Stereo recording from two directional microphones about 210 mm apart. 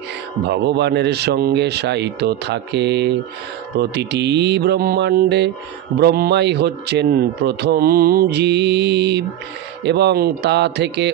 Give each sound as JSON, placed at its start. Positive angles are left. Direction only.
{"t": 0.5, "sound": "a man's voice", "side_deg": -55}